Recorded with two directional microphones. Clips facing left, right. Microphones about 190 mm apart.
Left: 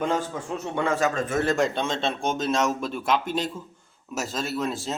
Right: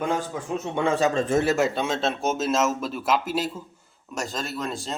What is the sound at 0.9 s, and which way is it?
Speech, 30° right (ahead or behind).